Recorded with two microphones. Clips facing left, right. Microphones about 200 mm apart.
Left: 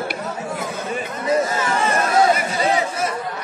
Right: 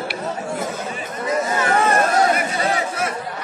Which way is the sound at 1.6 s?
55° right (ahead or behind).